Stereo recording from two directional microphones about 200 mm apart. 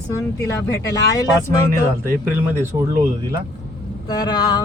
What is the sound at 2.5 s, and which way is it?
Speech, 10° right (ahead or behind).